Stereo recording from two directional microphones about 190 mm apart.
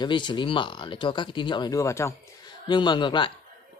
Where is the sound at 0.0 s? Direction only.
25° left (ahead or behind).